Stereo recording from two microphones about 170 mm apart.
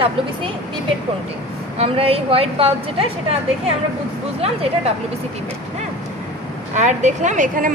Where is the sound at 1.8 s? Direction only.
35° right (ahead or behind).